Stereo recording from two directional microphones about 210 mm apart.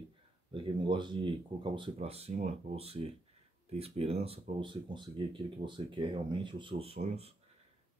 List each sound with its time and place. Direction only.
0.5 s speech: 25° right (ahead or behind)